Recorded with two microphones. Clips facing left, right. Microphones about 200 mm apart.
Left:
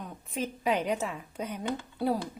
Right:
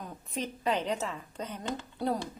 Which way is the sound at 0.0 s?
5° left (ahead or behind).